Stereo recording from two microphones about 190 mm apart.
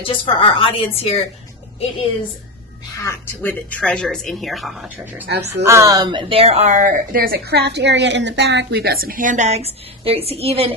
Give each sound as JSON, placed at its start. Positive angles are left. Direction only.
{"t": 0.0, "sound": "a woman's voice", "side_deg": 30}
{"t": 3.0, "sound": "speech", "side_deg": 10}
{"t": 5.2, "sound": "speech", "side_deg": -60}
{"t": 5.6, "sound": "speech", "side_deg": -15}